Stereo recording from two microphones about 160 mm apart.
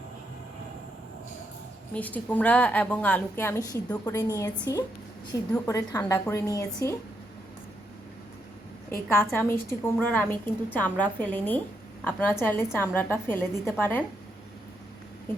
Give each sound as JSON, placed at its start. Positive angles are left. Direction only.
{"t": 1.9, "sound": "a woman's voice", "side_deg": 10}
{"t": 9.1, "sound": "a woman's voice", "side_deg": 15}